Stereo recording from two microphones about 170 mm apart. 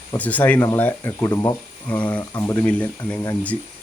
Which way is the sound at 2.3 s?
20° left (ahead or behind).